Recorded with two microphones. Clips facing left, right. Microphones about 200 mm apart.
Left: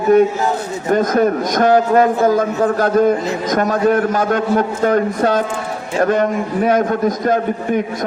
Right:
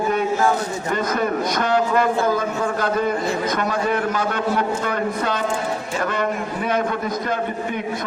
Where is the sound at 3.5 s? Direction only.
45° left (ahead or behind).